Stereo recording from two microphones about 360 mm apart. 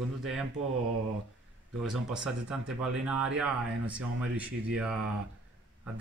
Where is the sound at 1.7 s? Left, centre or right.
Centre.